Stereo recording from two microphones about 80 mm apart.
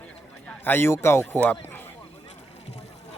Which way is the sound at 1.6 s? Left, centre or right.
Left.